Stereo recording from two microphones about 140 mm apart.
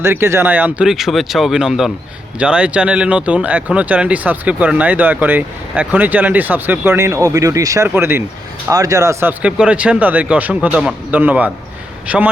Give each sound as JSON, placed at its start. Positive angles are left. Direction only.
{"t": 0.0, "sound": "speech", "side_deg": -15}
{"t": 9.4, "sound": "speech", "side_deg": -5}